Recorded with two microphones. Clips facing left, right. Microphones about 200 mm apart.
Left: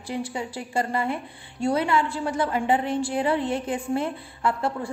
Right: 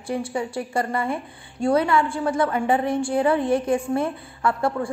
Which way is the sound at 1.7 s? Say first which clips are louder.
Right 4 dB; 25° left (ahead or behind).